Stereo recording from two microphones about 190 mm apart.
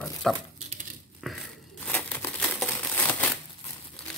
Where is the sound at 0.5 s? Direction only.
35° right (ahead or behind).